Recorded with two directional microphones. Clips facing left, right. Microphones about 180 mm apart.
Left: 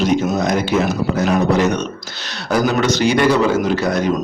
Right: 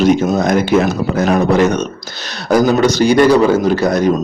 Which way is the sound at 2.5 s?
40° right (ahead or behind).